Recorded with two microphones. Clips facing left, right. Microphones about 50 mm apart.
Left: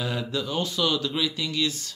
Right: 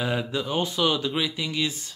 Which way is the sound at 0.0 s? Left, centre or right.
Right.